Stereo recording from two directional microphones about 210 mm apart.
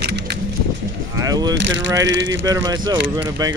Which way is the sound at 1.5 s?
60° right (ahead or behind).